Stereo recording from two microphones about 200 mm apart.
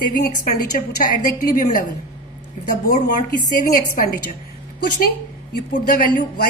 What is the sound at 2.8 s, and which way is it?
A woman's voice, 40° left (ahead or behind).